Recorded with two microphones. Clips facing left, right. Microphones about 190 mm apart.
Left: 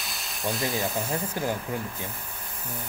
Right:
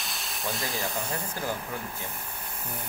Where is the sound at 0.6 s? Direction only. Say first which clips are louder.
Left 5 dB; 20° left (ahead or behind).